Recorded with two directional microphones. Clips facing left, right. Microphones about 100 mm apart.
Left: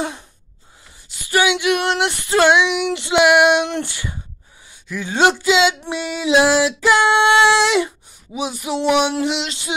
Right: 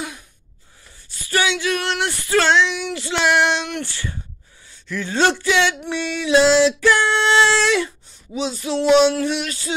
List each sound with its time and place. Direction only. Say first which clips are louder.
1.0 s female singing: left 4 dB; 15° left (ahead or behind)
3.6 s speech: left 3 dB; 20° left (ahead or behind)
4.8 s music: left 2 dB; 10° left (ahead or behind)